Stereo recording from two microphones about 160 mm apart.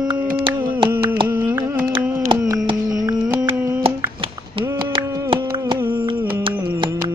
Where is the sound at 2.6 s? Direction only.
25° right (ahead or behind).